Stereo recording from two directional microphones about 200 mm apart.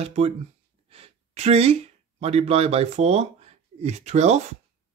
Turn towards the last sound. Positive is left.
turn(degrees=-35)  # may be behind; listen again after turning